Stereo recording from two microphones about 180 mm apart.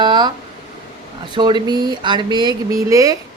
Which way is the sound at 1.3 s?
25° right (ahead or behind).